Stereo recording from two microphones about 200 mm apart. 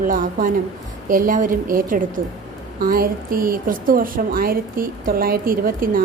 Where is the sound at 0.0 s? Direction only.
40° right (ahead or behind).